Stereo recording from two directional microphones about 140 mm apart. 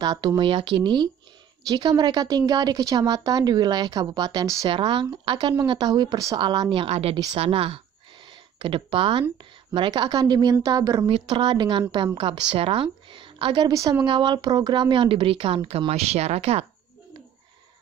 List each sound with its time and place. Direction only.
0.0 s a woman's voice: 30° right (ahead or behind)
11.1 s a woman's voice: 40° right (ahead or behind)